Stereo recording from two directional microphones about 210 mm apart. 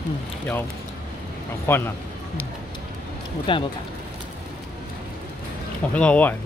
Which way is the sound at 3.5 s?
25° left (ahead or behind).